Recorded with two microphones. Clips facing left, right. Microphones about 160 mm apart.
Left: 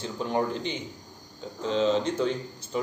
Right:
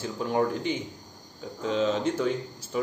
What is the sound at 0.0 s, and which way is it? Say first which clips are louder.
A man's voice: right 1 dB; 5° right (ahead or behind).